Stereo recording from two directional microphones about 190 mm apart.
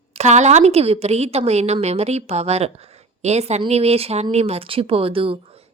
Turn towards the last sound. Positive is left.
turn(degrees=-30)  # may be behind; listen again after turning